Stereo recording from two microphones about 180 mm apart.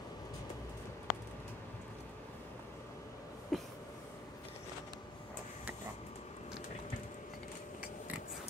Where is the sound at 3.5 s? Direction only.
Centre (ahead or behind).